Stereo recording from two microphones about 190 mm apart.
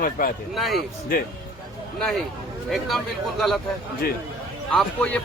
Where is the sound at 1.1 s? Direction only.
50° left (ahead or behind).